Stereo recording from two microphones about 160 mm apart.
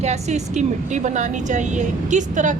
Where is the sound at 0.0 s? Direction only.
45° right (ahead or behind).